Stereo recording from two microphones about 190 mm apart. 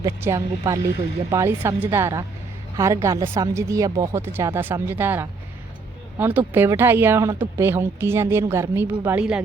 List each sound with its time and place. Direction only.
0.0 s speech: 15° right (ahead or behind)